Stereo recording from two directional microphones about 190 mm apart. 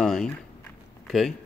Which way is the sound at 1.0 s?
Centre (ahead or behind).